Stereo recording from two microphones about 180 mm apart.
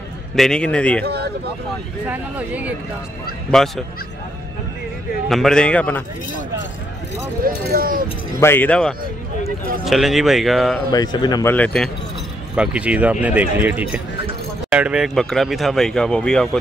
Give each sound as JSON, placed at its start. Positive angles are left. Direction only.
{"t": 0.4, "sound": "a man's voice", "side_deg": 5}
{"t": 1.0, "sound": "speech", "side_deg": -65}
{"t": 2.0, "sound": "speech", "side_deg": -10}
{"t": 5.3, "sound": "speech", "side_deg": 0}
{"t": 7.4, "sound": "speech", "side_deg": -55}
{"t": 8.4, "sound": "a man's voice", "side_deg": 10}
{"t": 10.9, "sound": "speech", "side_deg": 20}
{"t": 11.5, "sound": "a man's voice", "side_deg": 5}
{"t": 12.5, "sound": "speech", "side_deg": -5}